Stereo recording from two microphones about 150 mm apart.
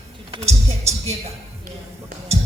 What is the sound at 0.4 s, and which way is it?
Speech, 45° right (ahead or behind).